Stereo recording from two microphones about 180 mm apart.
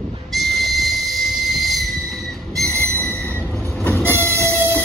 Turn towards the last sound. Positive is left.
turn(degrees=10)  # may be behind; listen again after turning